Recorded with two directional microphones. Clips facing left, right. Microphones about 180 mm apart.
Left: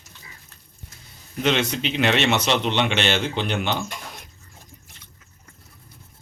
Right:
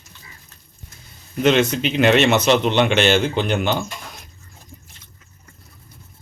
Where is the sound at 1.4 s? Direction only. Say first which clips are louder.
Right 6 dB; 45° right (ahead or behind).